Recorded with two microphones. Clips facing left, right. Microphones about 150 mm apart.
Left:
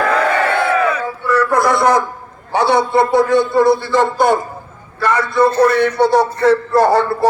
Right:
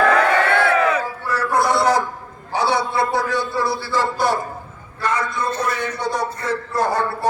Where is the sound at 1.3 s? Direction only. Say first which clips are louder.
Left 6 dB; 90° left.